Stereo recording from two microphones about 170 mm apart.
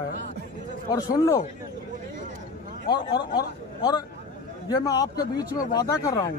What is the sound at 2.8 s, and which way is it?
A man's voice, 25° left (ahead or behind).